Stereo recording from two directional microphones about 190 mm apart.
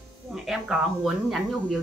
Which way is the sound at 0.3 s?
Centre (ahead or behind).